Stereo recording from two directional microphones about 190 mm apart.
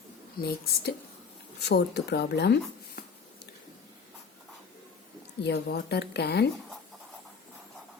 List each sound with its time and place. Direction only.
0.3 s a woman's voice: 55° left (ahead or behind)
5.4 s speech: 65° left (ahead or behind)